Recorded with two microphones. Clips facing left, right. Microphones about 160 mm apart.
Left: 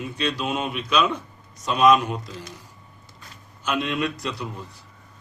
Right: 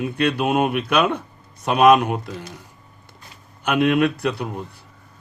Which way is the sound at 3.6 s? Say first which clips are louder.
Right 8 dB; 60° right (ahead or behind).